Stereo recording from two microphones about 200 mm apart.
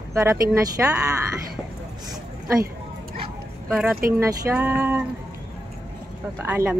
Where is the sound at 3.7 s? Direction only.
5° right (ahead or behind).